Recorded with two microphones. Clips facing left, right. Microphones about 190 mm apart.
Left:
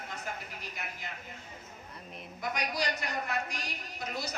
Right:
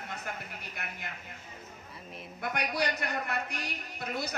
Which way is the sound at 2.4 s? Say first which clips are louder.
Right 2 dB; 60° right (ahead or behind).